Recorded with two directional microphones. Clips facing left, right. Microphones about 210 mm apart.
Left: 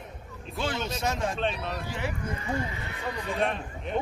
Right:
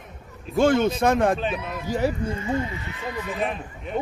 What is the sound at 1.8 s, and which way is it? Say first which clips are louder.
Speech: right 9 dB; 40° right (ahead or behind).